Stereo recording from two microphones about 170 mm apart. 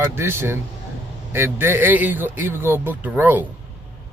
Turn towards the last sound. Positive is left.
turn(degrees=-10)  # may be behind; listen again after turning